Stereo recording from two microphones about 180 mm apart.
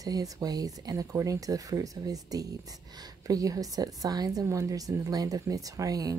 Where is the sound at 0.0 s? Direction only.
20° right (ahead or behind).